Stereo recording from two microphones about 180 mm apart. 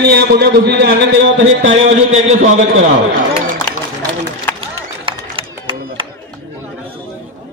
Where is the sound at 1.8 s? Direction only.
40° right (ahead or behind).